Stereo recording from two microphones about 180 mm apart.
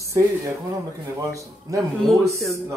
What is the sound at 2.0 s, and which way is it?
Speech, centre (ahead or behind).